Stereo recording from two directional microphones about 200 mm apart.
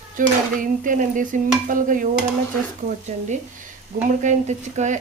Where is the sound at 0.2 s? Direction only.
40° right (ahead or behind).